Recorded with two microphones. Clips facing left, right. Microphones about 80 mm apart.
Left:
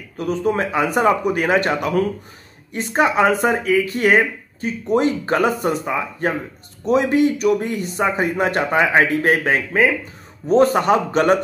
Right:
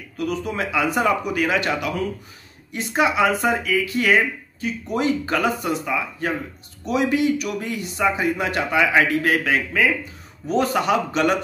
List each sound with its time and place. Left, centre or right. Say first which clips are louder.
0.2 s speech: left 5 dB; left